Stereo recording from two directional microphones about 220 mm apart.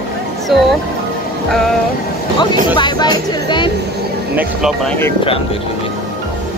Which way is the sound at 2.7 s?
20° left (ahead or behind).